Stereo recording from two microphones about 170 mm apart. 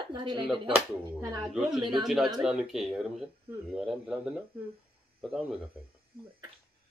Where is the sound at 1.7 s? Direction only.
25° right (ahead or behind).